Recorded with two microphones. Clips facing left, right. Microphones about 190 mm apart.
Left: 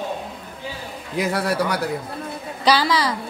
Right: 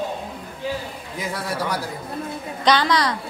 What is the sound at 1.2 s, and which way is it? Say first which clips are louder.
Speech: left 6 dB; 70° left (ahead or behind).